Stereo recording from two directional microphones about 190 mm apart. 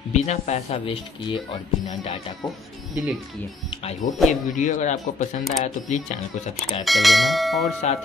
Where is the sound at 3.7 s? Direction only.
35° left (ahead or behind).